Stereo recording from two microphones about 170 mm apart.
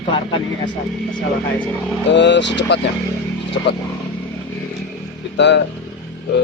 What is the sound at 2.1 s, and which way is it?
Speech, 90° left.